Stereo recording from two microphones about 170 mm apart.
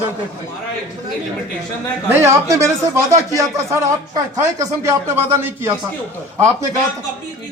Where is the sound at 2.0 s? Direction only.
15° right (ahead or behind).